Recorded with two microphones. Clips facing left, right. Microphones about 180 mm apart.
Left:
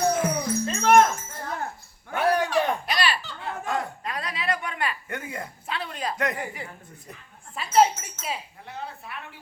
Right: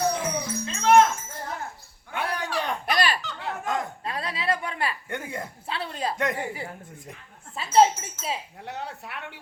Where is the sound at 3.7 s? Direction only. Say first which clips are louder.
Left 1 dB; 30° right (ahead or behind).